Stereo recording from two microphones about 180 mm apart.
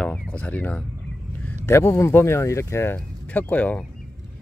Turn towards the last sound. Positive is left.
turn(degrees=10)  # may be behind; listen again after turning